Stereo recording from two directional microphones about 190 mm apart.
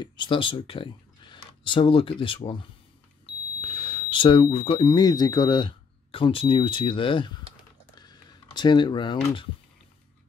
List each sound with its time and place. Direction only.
0.0 s speech: 25° left (ahead or behind)
3.6 s speech: 25° left (ahead or behind)
7.9 s a sound: 20° left (ahead or behind)